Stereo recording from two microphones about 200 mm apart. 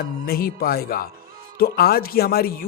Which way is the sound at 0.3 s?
50° left (ahead or behind).